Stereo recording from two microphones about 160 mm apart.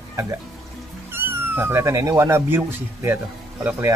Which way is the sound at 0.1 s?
15° right (ahead or behind).